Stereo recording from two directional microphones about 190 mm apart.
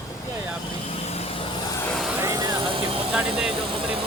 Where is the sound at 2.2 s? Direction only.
15° right (ahead or behind).